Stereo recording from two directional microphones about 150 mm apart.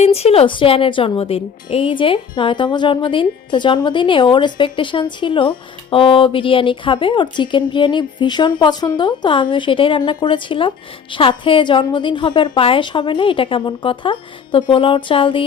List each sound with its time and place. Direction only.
0.0 s a woman's voice: 45° left (ahead or behind)